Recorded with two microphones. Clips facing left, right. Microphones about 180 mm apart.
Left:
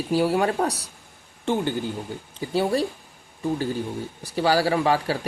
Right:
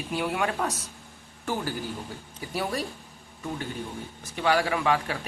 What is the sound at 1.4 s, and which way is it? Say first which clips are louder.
Speech: left 6 dB; 25° left (ahead or behind).